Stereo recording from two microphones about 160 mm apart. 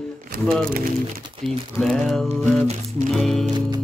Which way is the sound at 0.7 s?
65° right (ahead or behind).